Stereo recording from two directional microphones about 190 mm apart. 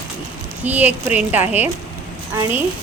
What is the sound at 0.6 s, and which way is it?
A woman's voice, 10° right (ahead or behind).